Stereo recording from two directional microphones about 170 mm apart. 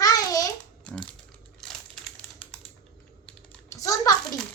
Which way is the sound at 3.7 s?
20° left (ahead or behind).